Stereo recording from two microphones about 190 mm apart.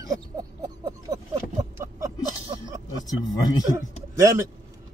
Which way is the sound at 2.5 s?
20° right (ahead or behind).